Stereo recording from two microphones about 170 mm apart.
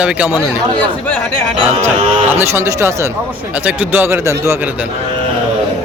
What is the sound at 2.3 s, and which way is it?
Speech, 15° right (ahead or behind).